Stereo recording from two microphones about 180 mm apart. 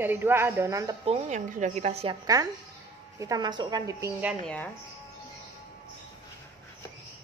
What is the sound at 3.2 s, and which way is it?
Speech, 20° right (ahead or behind).